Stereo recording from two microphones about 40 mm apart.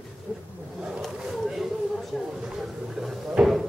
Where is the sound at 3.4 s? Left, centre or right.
Centre.